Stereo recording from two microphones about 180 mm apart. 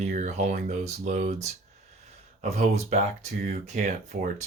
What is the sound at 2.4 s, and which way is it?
Speech, 40° right (ahead or behind).